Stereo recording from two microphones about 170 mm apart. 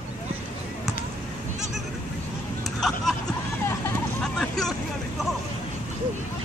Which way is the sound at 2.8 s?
Centre (ahead or behind).